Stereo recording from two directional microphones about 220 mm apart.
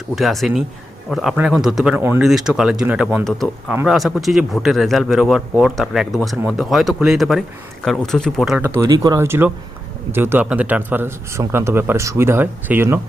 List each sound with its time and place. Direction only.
0.2 s a man's voice: centre (ahead or behind)